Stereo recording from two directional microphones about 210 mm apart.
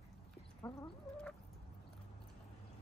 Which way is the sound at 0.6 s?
15° left (ahead or behind).